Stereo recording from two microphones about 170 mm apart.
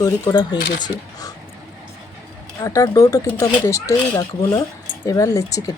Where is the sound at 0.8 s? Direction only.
20° left (ahead or behind).